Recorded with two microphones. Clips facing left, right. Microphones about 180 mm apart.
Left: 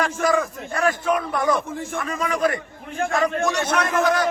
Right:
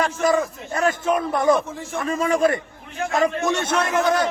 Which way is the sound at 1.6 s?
55° left (ahead or behind).